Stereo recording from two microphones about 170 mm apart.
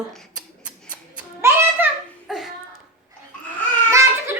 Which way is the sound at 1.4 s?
15° right (ahead or behind).